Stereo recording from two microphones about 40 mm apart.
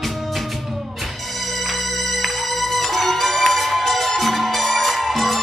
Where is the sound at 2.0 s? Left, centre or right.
Centre.